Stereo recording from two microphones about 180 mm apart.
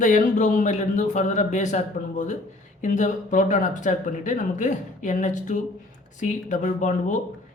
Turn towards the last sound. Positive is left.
turn(degrees=45)  # may be behind; listen again after turning